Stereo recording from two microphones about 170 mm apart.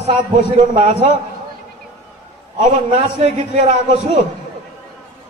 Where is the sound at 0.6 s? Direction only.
45° right (ahead or behind).